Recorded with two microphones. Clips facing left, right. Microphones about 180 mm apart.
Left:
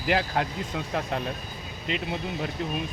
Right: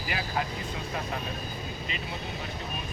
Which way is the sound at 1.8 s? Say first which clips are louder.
Left 11 dB; 70° left (ahead or behind).